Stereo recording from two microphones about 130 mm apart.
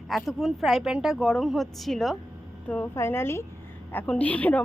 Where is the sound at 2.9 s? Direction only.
20° left (ahead or behind).